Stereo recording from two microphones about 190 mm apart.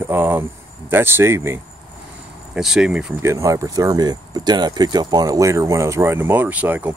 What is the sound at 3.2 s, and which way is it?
Speech, 15° right (ahead or behind).